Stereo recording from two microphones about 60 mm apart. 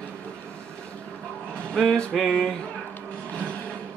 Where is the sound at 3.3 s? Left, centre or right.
Left.